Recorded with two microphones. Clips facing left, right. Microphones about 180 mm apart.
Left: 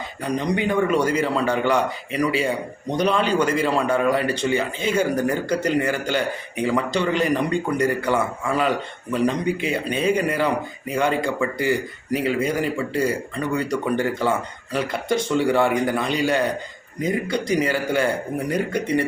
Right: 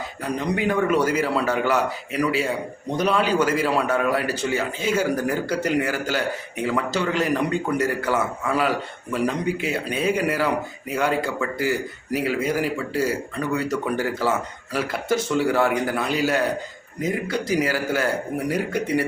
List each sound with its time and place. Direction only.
0.3 s speech: 5° right (ahead or behind)